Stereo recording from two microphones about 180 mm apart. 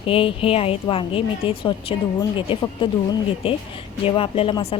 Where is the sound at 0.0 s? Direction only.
30° left (ahead or behind).